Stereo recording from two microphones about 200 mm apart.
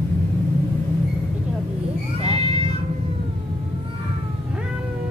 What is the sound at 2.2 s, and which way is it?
Cat, 30° right (ahead or behind).